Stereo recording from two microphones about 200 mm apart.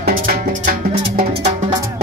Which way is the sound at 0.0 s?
45° right (ahead or behind).